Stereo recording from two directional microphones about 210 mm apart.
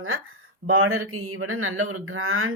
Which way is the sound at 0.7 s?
85° right.